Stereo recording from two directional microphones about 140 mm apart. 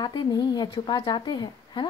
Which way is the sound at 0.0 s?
30° left (ahead or behind).